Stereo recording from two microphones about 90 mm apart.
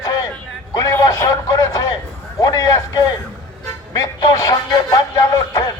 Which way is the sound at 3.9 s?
40° left (ahead or behind).